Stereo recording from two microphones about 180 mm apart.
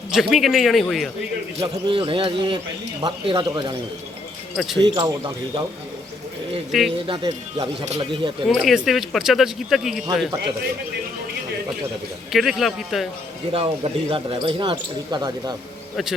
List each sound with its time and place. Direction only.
0.1 s a man's voice: centre (ahead or behind)
1.6 s speech: 30° right (ahead or behind)
4.5 s a man's voice: centre (ahead or behind)
4.9 s speech: 25° right (ahead or behind)
6.7 s a man's voice: centre (ahead or behind)
7.1 s speech: 25° right (ahead or behind)
8.4 s a man's voice: centre (ahead or behind)
12.3 s a man's voice: centre (ahead or behind)
13.5 s speech: 30° right (ahead or behind)